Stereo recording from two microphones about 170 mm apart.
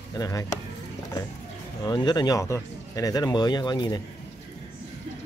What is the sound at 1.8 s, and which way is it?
Speech, 25° left (ahead or behind).